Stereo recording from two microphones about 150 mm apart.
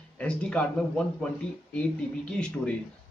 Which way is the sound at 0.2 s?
5° left (ahead or behind).